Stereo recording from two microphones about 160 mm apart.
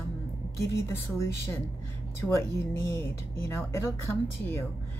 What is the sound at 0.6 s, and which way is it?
Speech, 15° left (ahead or behind).